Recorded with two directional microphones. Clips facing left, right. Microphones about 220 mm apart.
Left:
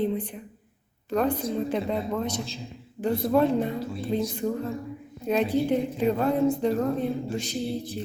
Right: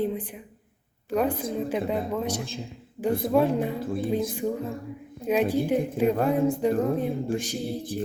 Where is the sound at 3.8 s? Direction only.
50° right (ahead or behind).